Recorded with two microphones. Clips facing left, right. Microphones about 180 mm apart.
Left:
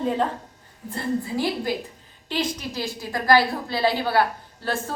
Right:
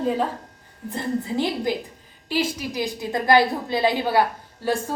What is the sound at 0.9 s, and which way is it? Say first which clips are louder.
A woman's voice: even; 20° right (ahead or behind).